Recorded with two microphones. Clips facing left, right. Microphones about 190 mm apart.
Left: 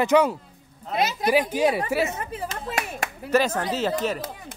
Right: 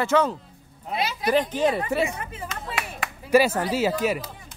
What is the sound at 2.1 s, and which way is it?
Speech, 40° left (ahead or behind).